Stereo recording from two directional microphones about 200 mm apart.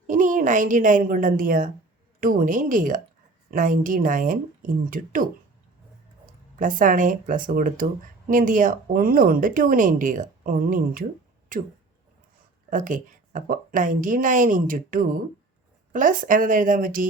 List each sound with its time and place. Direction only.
0.1 s a woman's voice: 40° right (ahead or behind)
6.6 s speech: 40° right (ahead or behind)
12.7 s speech: 40° right (ahead or behind)